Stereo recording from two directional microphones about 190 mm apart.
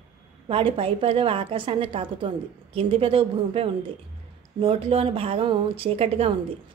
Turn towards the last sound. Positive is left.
turn(degrees=-30)  # may be behind; listen again after turning